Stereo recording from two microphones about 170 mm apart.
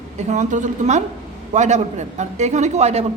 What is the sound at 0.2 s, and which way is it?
A woman's voice, 45° right (ahead or behind).